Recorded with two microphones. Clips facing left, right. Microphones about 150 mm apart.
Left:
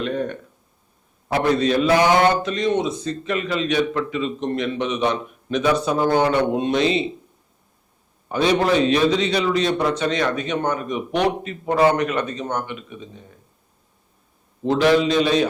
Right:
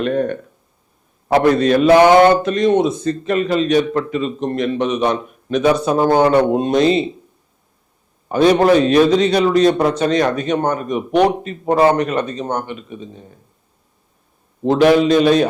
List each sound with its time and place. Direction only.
0.0 s a man's voice: 55° right (ahead or behind)
8.3 s a man's voice: 45° right (ahead or behind)
14.6 s a man's voice: 50° right (ahead or behind)